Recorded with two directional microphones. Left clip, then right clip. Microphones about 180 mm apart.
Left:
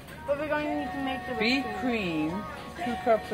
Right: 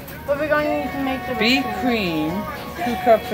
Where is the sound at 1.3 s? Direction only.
20° left (ahead or behind).